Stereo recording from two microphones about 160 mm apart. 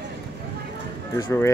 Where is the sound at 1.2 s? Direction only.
15° left (ahead or behind).